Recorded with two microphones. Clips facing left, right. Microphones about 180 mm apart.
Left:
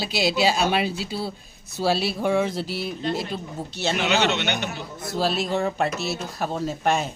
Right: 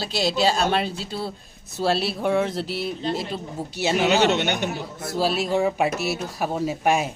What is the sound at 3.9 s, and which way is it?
Speech, 40° right (ahead or behind).